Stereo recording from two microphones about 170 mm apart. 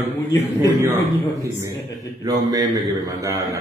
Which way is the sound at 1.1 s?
10° right (ahead or behind).